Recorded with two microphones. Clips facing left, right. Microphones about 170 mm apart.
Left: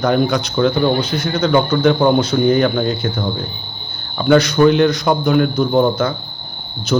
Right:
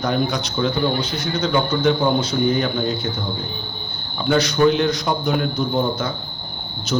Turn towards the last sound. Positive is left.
turn(degrees=70)  # may be behind; listen again after turning